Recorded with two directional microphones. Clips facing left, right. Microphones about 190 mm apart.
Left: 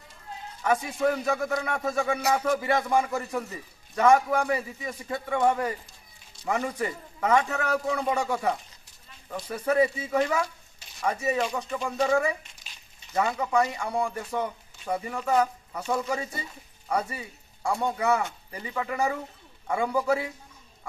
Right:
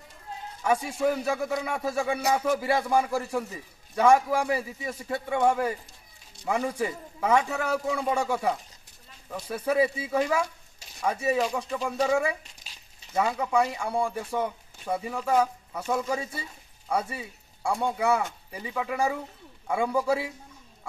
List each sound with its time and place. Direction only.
0.7 s speech: 5° right (ahead or behind)